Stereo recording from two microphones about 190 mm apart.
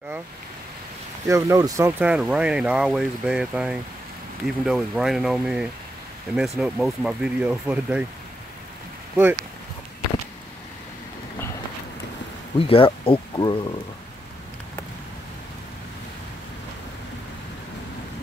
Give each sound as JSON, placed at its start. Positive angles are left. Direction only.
{"t": 1.2, "sound": "speech", "side_deg": -15}
{"t": 9.1, "sound": "speech", "side_deg": -10}
{"t": 12.5, "sound": "speech", "side_deg": 30}